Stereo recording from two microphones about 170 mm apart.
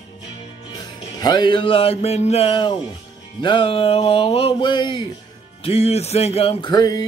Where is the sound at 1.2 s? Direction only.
25° left (ahead or behind).